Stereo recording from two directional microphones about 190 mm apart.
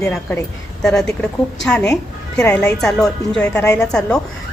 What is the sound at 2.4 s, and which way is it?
A woman's voice, 10° left (ahead or behind).